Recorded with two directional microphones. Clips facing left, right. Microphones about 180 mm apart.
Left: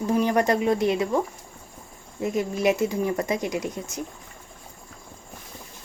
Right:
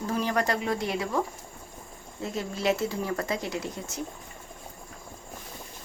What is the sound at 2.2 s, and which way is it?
Speech, 15° left (ahead or behind).